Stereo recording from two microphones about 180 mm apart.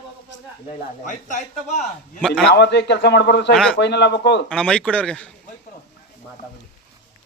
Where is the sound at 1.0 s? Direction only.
45° left (ahead or behind).